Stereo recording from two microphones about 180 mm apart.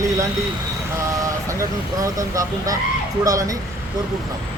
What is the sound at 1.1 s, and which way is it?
Speech, 15° right (ahead or behind).